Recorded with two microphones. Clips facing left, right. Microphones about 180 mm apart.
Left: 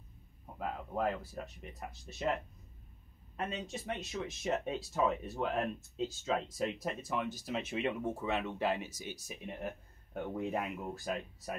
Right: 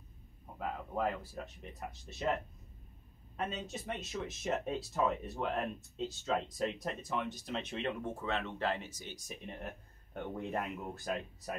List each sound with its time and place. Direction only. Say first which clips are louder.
0.6 s speech: even; centre (ahead or behind)